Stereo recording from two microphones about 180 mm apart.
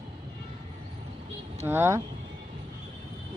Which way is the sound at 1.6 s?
15° right (ahead or behind).